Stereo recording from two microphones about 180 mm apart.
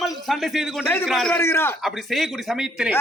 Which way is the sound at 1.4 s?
15° left (ahead or behind).